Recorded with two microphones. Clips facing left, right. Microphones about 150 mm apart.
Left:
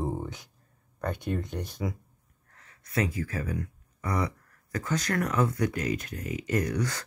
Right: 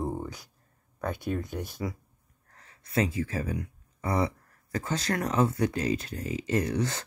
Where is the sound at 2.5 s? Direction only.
30° right (ahead or behind).